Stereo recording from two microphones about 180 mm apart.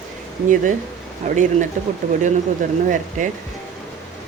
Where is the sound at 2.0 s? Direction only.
40° right (ahead or behind).